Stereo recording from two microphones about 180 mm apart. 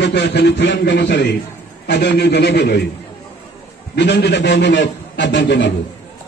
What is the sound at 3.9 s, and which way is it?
A man's voice, 70° left (ahead or behind).